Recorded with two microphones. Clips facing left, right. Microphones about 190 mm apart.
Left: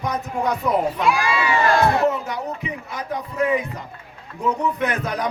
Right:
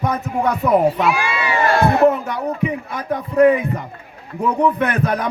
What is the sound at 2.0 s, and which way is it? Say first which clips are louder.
A man's voice: right 6 dB; 55° right (ahead or behind).